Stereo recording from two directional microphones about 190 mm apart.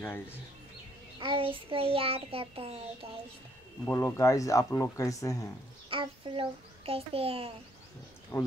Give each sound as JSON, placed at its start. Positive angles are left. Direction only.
{"t": 1.2, "sound": "child singing", "side_deg": -25}
{"t": 3.8, "sound": "speech", "side_deg": 15}
{"t": 5.9, "sound": "a child's voice", "side_deg": -25}
{"t": 8.3, "sound": "speech", "side_deg": 15}